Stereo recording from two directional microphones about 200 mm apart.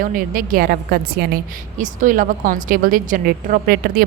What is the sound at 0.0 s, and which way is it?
A woman's voice, 45° right (ahead or behind).